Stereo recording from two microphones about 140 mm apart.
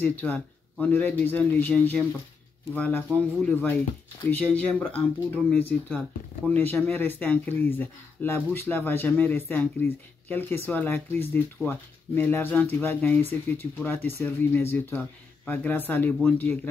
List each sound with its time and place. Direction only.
0.0 s speech: 10° left (ahead or behind)